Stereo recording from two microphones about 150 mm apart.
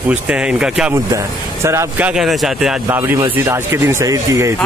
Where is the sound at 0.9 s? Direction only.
20° right (ahead or behind).